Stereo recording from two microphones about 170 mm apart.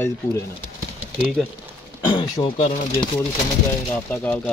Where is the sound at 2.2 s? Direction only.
25° left (ahead or behind).